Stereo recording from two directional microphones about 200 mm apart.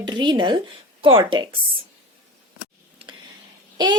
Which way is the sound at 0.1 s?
20° right (ahead or behind).